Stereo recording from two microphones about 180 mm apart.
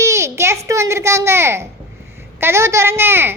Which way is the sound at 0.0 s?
15° right (ahead or behind).